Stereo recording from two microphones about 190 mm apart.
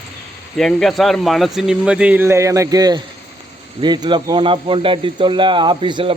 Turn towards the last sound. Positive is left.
turn(degrees=-25)  # may be behind; listen again after turning